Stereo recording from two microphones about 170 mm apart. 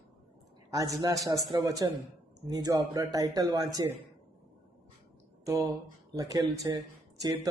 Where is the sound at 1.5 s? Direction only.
20° right (ahead or behind).